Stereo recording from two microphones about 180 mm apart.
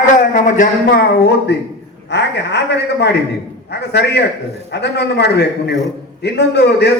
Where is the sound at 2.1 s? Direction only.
75° left (ahead or behind).